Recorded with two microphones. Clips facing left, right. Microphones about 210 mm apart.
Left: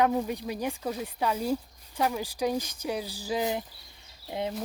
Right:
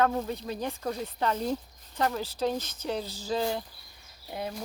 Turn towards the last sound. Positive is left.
turn(degrees=20)  # may be behind; listen again after turning